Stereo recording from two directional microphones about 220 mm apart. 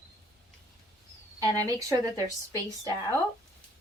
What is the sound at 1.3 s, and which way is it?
Speech, 15° right (ahead or behind).